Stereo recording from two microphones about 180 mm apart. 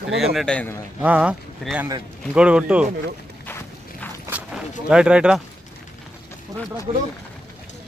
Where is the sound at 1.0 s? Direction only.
5° right (ahead or behind).